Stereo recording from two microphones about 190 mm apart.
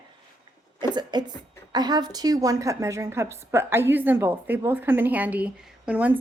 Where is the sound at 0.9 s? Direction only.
20° right (ahead or behind).